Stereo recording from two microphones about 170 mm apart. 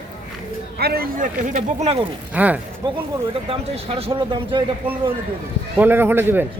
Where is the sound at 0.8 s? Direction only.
65° right (ahead or behind); by 2.0 s 40° right (ahead or behind).